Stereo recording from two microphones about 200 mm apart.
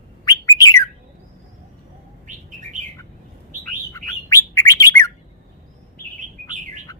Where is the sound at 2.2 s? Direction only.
40° right (ahead or behind).